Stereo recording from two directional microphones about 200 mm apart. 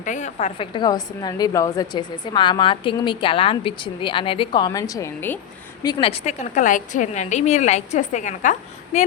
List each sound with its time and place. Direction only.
0.0 s a woman's voice: 40° left (ahead or behind); by 5.4 s 10° left (ahead or behind)
5.8 s a woman's voice: 25° left (ahead or behind)